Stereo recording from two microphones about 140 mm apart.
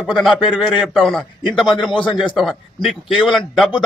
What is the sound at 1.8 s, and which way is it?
Speech, 35° left (ahead or behind).